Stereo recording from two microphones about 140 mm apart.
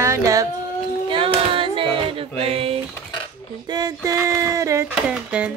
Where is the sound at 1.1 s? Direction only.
40° right (ahead or behind).